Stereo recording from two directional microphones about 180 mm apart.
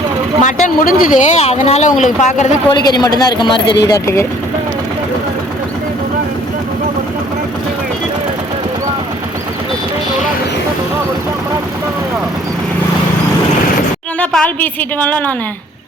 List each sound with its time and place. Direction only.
0.4 s speech: 45° left (ahead or behind)
2.7 s a woman's voice: 20° left (ahead or behind)
14.2 s speech: 5° left (ahead or behind)